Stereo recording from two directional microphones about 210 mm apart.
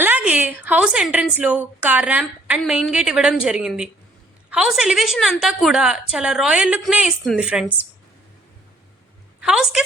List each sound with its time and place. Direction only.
0.0 s a woman's voice: 5° right (ahead or behind)
9.4 s a woman's voice: 5° right (ahead or behind)